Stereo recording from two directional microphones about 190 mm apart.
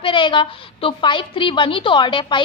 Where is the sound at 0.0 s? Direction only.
25° left (ahead or behind).